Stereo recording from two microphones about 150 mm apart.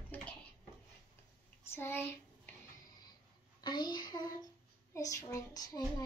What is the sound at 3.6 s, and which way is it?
A child's voice, 30° left (ahead or behind).